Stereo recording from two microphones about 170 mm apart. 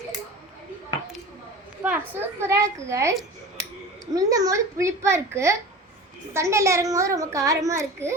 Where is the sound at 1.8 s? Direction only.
10° right (ahead or behind).